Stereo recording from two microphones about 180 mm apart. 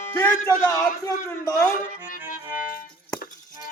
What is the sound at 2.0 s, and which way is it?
Music, 50° left (ahead or behind).